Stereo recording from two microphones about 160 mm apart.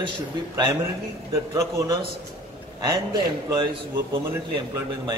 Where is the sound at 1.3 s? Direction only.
20° right (ahead or behind).